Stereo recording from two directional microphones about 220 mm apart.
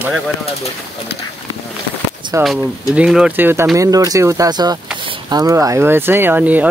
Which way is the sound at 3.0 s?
5° right (ahead or behind).